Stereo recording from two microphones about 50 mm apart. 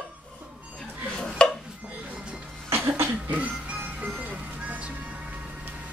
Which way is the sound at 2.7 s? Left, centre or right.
Right.